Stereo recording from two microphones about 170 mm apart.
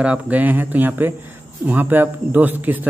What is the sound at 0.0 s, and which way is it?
A man's voice, 10° right (ahead or behind).